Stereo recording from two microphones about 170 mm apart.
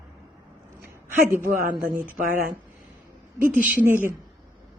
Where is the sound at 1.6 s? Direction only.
55° right (ahead or behind).